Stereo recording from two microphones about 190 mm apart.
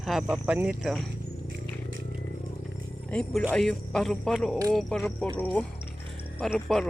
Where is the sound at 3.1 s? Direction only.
5° left (ahead or behind).